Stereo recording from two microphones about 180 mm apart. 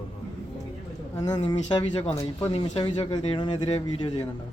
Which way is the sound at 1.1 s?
20° left (ahead or behind).